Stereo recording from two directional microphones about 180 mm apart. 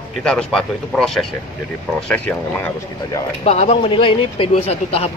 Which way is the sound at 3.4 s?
35° left (ahead or behind).